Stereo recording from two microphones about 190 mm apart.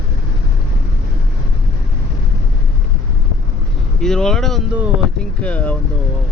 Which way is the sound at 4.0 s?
5° left (ahead or behind).